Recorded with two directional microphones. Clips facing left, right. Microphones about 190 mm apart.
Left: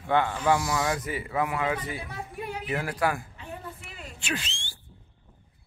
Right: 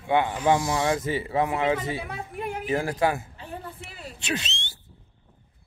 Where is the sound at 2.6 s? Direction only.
25° right (ahead or behind).